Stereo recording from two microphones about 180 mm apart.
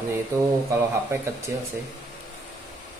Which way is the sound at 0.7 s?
15° right (ahead or behind).